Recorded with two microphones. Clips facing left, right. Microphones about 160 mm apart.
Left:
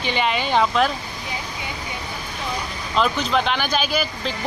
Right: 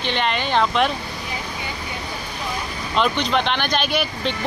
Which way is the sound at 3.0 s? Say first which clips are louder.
Even; 5° left (ahead or behind).